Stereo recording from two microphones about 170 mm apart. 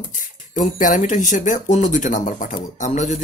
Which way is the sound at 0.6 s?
50° left (ahead or behind).